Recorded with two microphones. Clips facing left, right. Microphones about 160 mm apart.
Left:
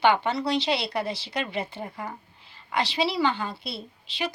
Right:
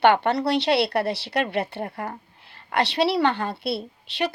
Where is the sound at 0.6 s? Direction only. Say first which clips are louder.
Right 5 dB; centre (ahead or behind).